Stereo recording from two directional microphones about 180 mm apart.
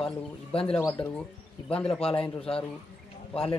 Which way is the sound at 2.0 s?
30° left (ahead or behind).